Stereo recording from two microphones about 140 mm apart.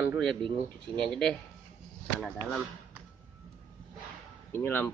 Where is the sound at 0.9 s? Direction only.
5° left (ahead or behind).